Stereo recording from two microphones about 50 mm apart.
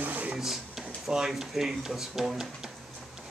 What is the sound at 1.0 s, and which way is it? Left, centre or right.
Speech, centre.